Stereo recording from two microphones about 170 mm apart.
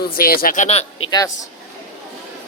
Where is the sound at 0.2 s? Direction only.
55° left (ahead or behind); by 0.9 s 40° left (ahead or behind).